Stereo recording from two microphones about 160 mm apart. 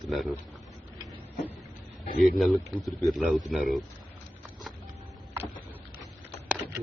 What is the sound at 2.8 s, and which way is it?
A man's voice, centre (ahead or behind).